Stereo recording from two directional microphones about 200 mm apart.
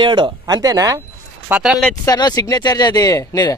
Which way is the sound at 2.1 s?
20° left (ahead or behind).